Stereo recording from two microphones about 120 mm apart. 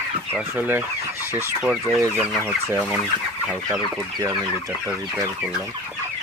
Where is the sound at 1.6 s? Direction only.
5° right (ahead or behind).